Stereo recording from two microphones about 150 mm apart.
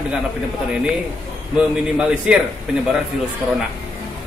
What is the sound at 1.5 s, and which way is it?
Speech, 5° right (ahead or behind).